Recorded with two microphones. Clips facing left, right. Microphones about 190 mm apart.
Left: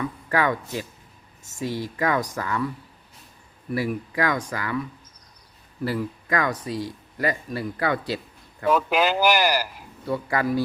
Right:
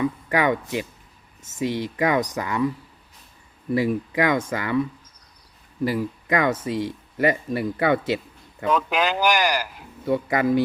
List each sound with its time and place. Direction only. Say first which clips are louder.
0.0 s speech: right 2 dB; 15° right (ahead or behind)
3.8 s speech: right 4 dB; 20° right (ahead or behind)
5.8 s speech: right 3 dB; 15° right (ahead or behind)
8.6 s speech: left 1 dB; 10° left (ahead or behind)
10.1 s speech: right 4 dB; 20° right (ahead or behind)